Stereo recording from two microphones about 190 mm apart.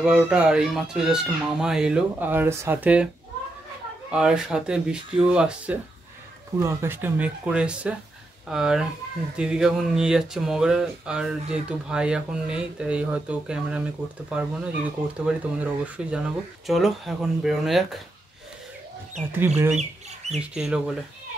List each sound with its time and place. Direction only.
0.0 s speech: 5° right (ahead or behind)
4.1 s speech: 5° right (ahead or behind)
19.3 s speech: 10° right (ahead or behind)
19.8 s bird: 35° right (ahead or behind)
20.5 s speech: 5° right (ahead or behind)